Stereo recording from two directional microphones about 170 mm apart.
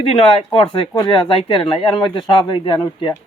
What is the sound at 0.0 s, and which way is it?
Speech, 35° left (ahead or behind).